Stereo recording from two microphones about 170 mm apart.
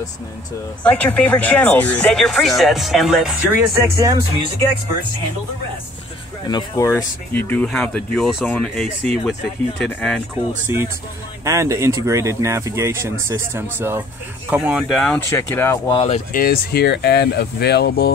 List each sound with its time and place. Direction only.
0.8 s speech: 10° left (ahead or behind); by 4.5 s 20° right (ahead or behind)
6.4 s speech: 25° left (ahead or behind); by 10.2 s 5° left (ahead or behind)
11.4 s speech: 15° right (ahead or behind); by 15.1 s centre (ahead or behind)
15.1 s speech: 15° left (ahead or behind)
16.3 s speech: 60° left (ahead or behind)